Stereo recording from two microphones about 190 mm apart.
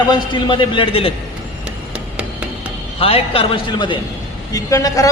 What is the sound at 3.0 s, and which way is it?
A man's voice, 30° left (ahead or behind).